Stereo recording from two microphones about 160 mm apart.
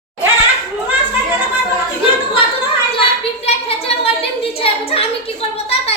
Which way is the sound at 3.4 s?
40° left (ahead or behind).